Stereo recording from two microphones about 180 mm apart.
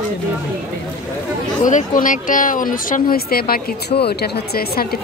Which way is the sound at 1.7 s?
45° left (ahead or behind).